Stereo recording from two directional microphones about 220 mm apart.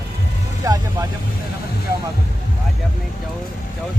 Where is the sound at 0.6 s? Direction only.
15° right (ahead or behind).